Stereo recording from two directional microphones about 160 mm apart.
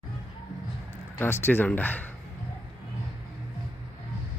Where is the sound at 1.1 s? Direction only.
15° left (ahead or behind).